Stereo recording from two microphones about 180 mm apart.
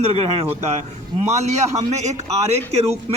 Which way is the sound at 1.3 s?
40° right (ahead or behind).